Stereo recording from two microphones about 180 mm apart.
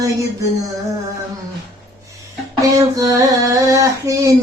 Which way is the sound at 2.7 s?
20° right (ahead or behind).